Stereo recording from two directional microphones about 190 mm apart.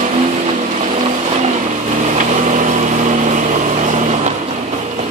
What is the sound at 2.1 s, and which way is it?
Vehicle, 40° right (ahead or behind).